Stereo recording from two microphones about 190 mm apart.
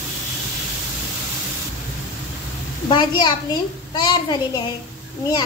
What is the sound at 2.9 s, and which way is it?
A woman's voice, 25° left (ahead or behind).